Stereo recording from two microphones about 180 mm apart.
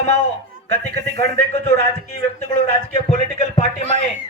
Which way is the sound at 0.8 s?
40° left (ahead or behind).